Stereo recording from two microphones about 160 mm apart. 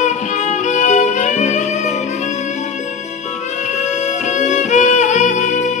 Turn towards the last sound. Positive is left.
turn(degrees=45)  # may be behind; listen again after turning